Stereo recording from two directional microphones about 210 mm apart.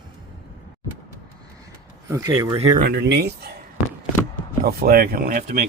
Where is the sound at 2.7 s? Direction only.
50° right (ahead or behind).